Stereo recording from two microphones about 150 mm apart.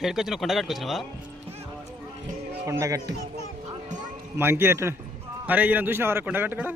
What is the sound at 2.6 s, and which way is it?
Speech, 20° right (ahead or behind).